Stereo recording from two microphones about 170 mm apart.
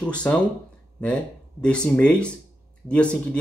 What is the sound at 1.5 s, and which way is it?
Speech, 5° left (ahead or behind).